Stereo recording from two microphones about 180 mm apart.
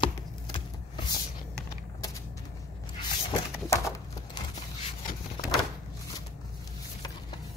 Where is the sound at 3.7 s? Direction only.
15° left (ahead or behind).